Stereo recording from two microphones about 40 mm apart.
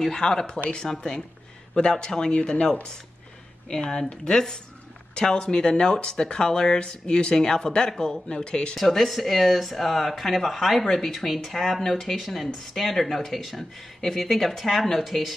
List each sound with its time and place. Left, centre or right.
0.0 s speech: centre
8.7 s speech: centre
13.6 s speech: centre